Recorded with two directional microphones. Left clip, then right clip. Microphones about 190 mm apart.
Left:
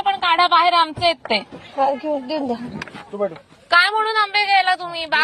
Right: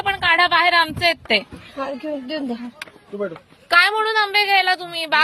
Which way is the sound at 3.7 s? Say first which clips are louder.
Even; 30° right (ahead or behind).